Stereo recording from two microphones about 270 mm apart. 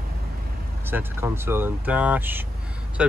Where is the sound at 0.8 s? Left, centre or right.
Centre.